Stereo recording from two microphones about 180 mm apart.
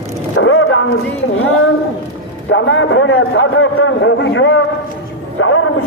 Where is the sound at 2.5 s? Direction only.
90° left.